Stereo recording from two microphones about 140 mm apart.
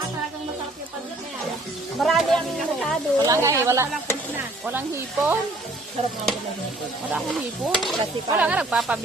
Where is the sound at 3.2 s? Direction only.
20° right (ahead or behind).